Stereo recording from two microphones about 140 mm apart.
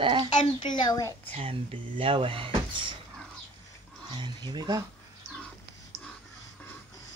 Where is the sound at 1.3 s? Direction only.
40° right (ahead or behind).